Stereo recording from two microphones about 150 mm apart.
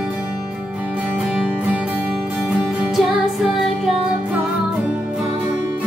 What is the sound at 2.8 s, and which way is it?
Music, 5° right (ahead or behind).